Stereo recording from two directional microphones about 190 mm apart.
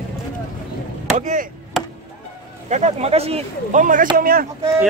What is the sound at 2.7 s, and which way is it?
Speech, 35° right (ahead or behind).